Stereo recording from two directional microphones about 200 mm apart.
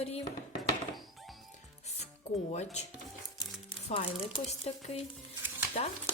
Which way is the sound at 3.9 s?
30° left (ahead or behind).